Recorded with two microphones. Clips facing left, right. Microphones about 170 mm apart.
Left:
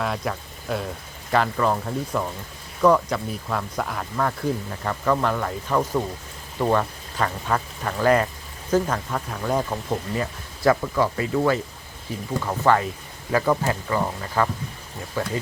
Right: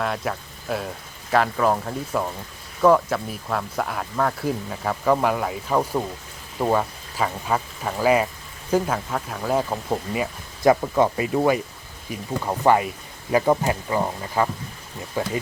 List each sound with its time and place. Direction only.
0.0 s speech: centre (ahead or behind)
9.6 s speech: 15° right (ahead or behind)